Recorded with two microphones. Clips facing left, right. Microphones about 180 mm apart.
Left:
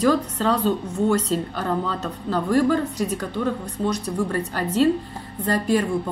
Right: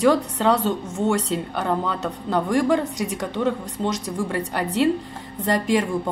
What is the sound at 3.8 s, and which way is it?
Speech, 90° right.